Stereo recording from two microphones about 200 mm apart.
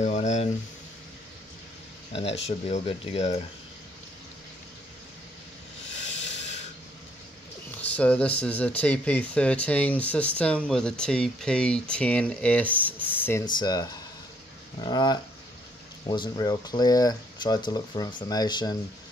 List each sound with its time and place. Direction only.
0.0 s a sound: 35° left (ahead or behind)
2.1 s speech: 30° left (ahead or behind)
5.9 s hiss: 65° left (ahead or behind)
6.3 s spray: 35° left (ahead or behind)
7.8 s speech: 5° left (ahead or behind)